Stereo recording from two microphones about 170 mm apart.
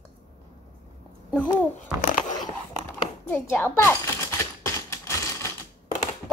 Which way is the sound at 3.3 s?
10° left (ahead or behind).